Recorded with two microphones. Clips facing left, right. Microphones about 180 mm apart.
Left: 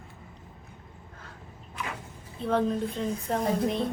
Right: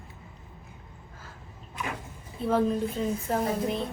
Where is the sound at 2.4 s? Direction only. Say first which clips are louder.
Right 1 dB; 5° right (ahead or behind).